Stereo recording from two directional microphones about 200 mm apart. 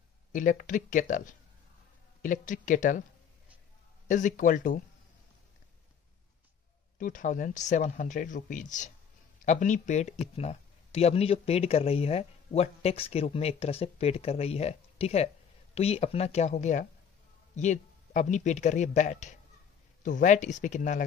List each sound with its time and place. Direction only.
0.3 s speech: 40° left (ahead or behind)
4.1 s speech: 40° left (ahead or behind)
7.0 s speech: 40° left (ahead or behind)